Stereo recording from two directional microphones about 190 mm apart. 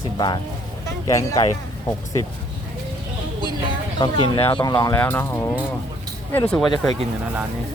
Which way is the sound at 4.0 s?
25° left (ahead or behind).